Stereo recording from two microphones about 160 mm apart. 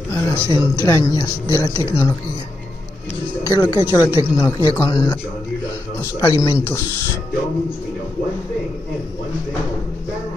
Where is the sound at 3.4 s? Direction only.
20° left (ahead or behind).